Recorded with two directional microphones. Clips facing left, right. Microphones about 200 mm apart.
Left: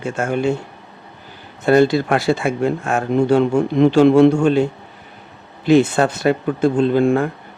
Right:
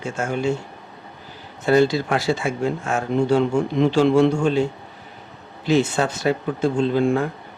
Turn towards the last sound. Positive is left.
turn(degrees=55)  # may be behind; listen again after turning